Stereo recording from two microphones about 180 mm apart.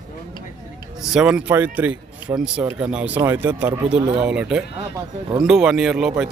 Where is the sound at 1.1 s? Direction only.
5° right (ahead or behind).